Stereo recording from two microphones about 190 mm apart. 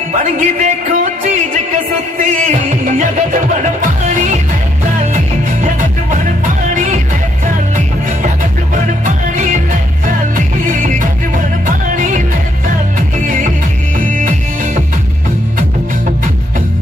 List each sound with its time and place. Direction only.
0.1 s a man's voice: 40° right (ahead or behind)
2.7 s music: 45° right (ahead or behind)
6.7 s music: 40° right (ahead or behind)
9.0 s music: 45° right (ahead or behind)